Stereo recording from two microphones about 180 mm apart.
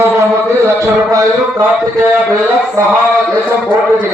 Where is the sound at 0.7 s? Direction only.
15° right (ahead or behind).